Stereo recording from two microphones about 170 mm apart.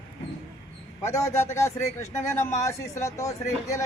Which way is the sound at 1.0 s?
15° left (ahead or behind).